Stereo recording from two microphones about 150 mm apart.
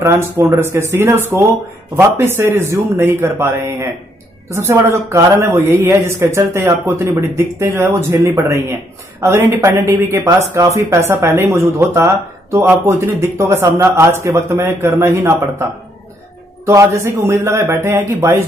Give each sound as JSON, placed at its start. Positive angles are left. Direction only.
{"t": 0.6, "sound": "speech", "side_deg": -15}
{"t": 16.6, "sound": "speech", "side_deg": -20}